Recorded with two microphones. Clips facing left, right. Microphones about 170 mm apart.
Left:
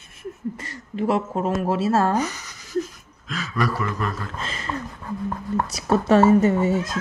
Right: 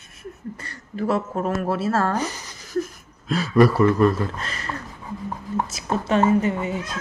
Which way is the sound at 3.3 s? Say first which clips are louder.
Right 9 dB; 35° right (ahead or behind).